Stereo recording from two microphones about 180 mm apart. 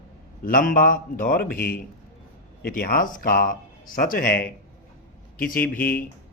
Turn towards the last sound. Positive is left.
turn(degrees=10)  # may be behind; listen again after turning